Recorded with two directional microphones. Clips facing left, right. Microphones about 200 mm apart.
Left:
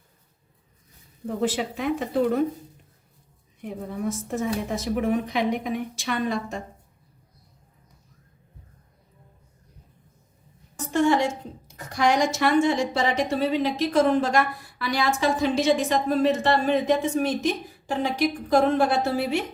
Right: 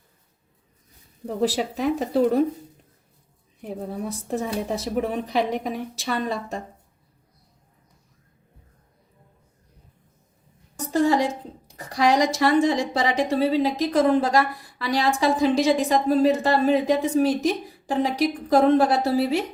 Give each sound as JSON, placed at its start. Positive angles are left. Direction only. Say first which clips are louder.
{"t": 1.4, "sound": "speech", "louder": "right 3 dB", "side_deg": -40}
{"t": 4.3, "sound": "speech", "louder": "right 3 dB", "side_deg": -35}
{"t": 10.9, "sound": "a sound", "louder": "right 1 dB", "side_deg": -35}
{"t": 13.3, "sound": "speech", "louder": "right 3 dB", "side_deg": -35}